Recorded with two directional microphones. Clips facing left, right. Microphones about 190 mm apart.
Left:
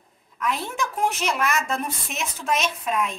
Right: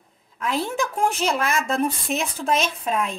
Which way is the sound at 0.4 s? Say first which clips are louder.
Right 3 dB; 30° right (ahead or behind).